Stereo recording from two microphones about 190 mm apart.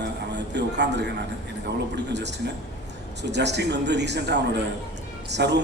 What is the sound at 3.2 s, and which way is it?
A man's voice, 65° right (ahead or behind).